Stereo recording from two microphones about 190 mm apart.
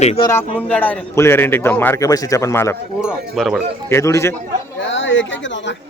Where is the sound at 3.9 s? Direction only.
15° left (ahead or behind).